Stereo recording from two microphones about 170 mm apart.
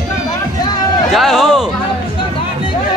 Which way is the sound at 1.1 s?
Centre (ahead or behind).